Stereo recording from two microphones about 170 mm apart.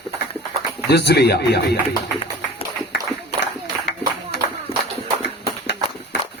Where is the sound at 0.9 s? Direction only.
75° left (ahead or behind).